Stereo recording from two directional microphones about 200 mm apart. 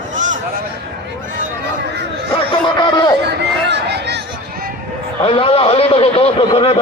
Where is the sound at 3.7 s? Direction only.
55° right (ahead or behind).